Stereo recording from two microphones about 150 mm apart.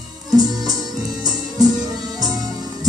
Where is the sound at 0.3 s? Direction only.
25° right (ahead or behind).